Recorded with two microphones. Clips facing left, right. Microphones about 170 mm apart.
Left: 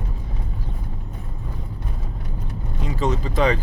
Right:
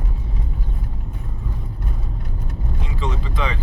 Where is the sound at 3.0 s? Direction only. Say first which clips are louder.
Left 6 dB; 40° left (ahead or behind).